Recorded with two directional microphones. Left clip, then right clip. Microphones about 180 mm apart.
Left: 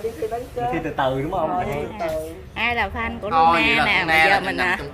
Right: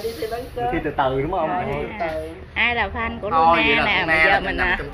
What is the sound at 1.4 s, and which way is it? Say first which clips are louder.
A woman's voice: even; 10° left (ahead or behind).